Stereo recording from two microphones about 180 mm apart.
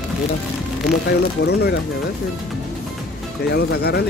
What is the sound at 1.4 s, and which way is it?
Speech, 65° left (ahead or behind).